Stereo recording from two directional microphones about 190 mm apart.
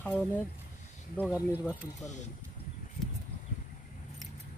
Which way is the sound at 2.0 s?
40° left (ahead or behind).